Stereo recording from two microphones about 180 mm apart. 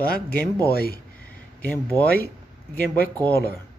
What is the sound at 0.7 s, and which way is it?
Speech, 55° left (ahead or behind).